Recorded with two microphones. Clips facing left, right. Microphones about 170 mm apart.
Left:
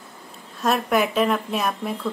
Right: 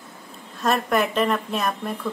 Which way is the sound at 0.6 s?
Centre (ahead or behind).